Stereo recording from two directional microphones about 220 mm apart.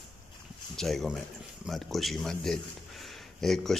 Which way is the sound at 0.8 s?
Centre (ahead or behind).